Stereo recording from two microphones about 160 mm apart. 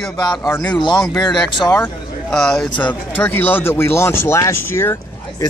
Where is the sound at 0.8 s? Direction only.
30° left (ahead or behind).